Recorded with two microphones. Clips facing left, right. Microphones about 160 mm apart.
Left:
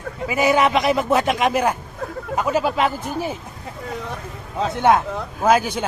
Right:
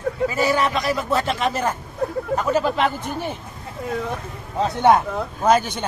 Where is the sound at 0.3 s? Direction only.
15° left (ahead or behind).